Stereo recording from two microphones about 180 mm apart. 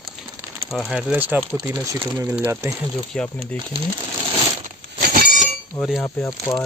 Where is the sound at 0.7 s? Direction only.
Centre (ahead or behind).